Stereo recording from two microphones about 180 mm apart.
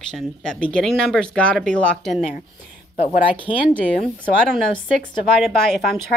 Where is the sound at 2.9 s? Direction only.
35° left (ahead or behind).